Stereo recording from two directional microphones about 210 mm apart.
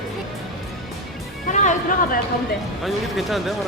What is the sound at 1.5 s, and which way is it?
Music, 35° left (ahead or behind).